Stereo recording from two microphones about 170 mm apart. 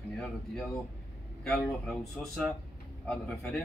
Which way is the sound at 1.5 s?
5° left (ahead or behind).